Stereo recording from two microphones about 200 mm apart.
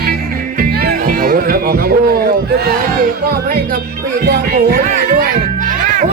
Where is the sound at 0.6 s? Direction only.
45° right (ahead or behind).